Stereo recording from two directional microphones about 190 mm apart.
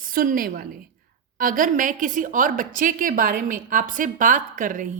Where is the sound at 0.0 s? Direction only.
50° right (ahead or behind).